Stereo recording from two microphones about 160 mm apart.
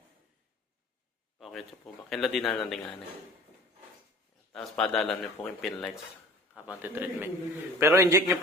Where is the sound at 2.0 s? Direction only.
Centre (ahead or behind).